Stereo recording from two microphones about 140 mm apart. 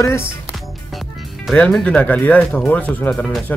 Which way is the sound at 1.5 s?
10° left (ahead or behind).